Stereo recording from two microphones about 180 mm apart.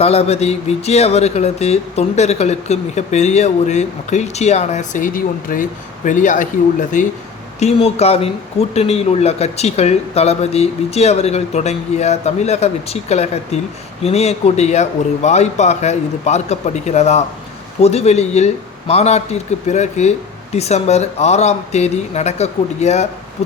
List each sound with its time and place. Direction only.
0.0 s speech: 35° left (ahead or behind)
7.6 s speech: 35° left (ahead or behind)